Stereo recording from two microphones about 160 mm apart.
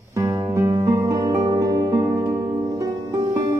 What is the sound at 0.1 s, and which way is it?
Music, 20° right (ahead or behind).